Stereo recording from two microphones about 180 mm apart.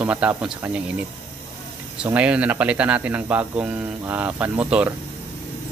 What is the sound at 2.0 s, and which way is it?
Speech, 5° right (ahead or behind).